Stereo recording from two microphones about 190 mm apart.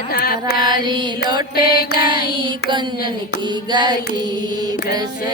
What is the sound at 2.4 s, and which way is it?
Mantra, 25° right (ahead or behind).